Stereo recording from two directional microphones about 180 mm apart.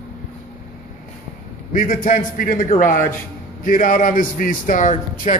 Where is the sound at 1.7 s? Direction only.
50° left (ahead or behind).